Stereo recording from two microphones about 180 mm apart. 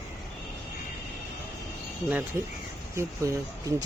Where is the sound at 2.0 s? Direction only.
10° right (ahead or behind).